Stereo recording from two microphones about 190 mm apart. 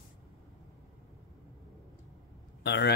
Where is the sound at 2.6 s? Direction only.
60° left (ahead or behind).